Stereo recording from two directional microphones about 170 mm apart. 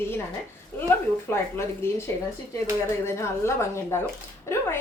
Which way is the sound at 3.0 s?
15° left (ahead or behind).